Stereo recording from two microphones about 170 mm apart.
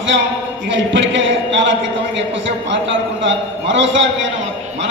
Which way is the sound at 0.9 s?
90° right.